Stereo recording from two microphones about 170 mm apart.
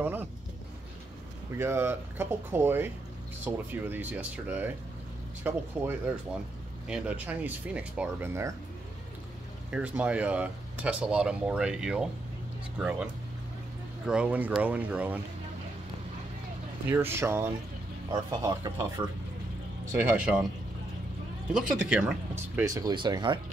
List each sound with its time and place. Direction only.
0.0 s music: 10° right (ahead or behind)
1.5 s speech: 15° right (ahead or behind)
9.7 s speech: 5° right (ahead or behind)
16.8 s speech: 15° right (ahead or behind)
20.0 s speech: 10° right (ahead or behind)
21.5 s speech: 5° right (ahead or behind); by 23.4 s 25° right (ahead or behind)